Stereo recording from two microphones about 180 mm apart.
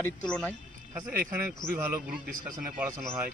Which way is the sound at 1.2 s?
55° right (ahead or behind).